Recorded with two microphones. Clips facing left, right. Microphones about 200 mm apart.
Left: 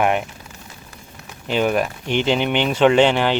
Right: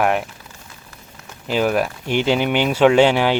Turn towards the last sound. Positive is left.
turn(degrees=-10)  # may be behind; listen again after turning